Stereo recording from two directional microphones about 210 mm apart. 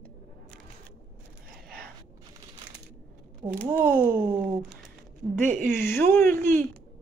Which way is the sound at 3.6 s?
10° left (ahead or behind).